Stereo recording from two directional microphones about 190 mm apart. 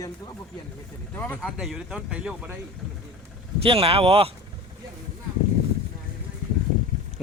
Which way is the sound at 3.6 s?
30° right (ahead or behind).